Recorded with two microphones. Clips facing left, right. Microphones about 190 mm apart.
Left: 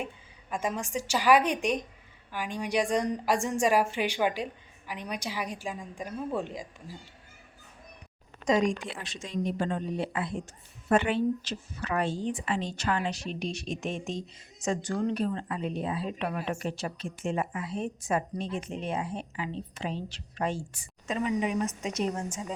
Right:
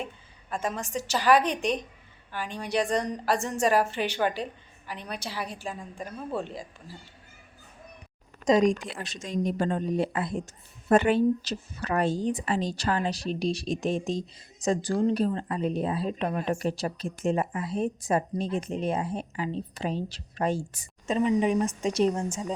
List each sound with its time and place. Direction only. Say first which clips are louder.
0.5 s a woman's voice: even; 10° left (ahead or behind)
8.4 s speech: right 4 dB; 35° right (ahead or behind)